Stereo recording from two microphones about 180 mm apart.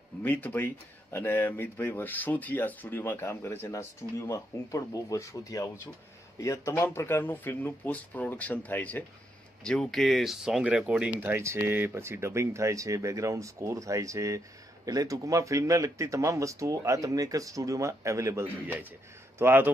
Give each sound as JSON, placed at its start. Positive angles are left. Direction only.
{"t": 0.2, "sound": "a man's voice", "side_deg": 10}